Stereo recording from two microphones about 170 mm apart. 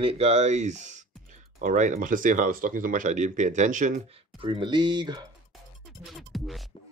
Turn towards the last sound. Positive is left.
turn(degrees=0)  # may be behind; listen again after turning